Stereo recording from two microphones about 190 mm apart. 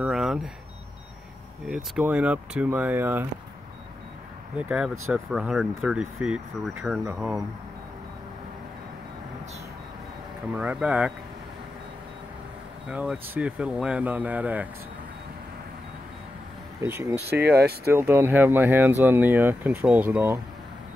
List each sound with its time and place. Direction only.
0.0 s vehicle: 5° right (ahead or behind)
1.7 s speech: 5° right (ahead or behind)
4.6 s speech: 5° right (ahead or behind)
10.5 s speech: 5° right (ahead or behind)
12.8 s speech: 5° right (ahead or behind)
16.8 s speech: 10° right (ahead or behind)
17.3 s speech: 55° right (ahead or behind)
17.9 s speech: 10° right (ahead or behind)